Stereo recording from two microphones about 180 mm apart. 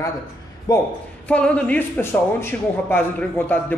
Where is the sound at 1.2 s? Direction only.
5° left (ahead or behind).